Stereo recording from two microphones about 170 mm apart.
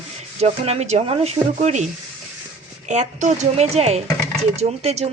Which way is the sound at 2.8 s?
45° right (ahead or behind).